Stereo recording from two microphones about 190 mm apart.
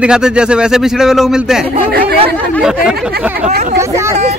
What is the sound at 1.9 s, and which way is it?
Speech, 60° right (ahead or behind).